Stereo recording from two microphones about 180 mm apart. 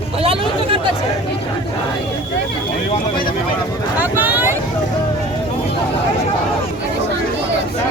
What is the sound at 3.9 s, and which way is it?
Vehicle, 10° right (ahead or behind).